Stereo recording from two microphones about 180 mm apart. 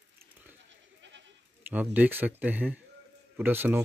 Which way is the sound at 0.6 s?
85° right.